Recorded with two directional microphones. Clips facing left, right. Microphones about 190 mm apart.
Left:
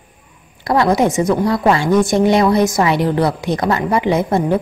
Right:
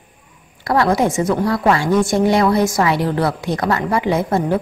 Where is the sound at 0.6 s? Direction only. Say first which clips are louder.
Left 2 dB; 20° left (ahead or behind).